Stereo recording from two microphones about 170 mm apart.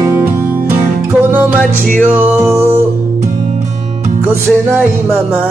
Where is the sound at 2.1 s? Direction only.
10° right (ahead or behind).